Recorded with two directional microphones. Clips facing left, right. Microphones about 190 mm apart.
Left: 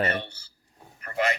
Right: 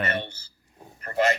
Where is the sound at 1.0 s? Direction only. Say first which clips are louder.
Right 4 dB; 40° right (ahead or behind).